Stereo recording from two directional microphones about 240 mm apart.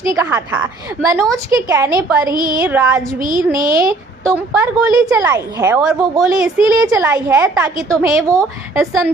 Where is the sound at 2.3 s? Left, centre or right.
Right.